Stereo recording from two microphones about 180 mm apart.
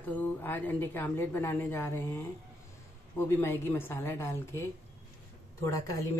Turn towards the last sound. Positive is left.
turn(degrees=15)  # may be behind; listen again after turning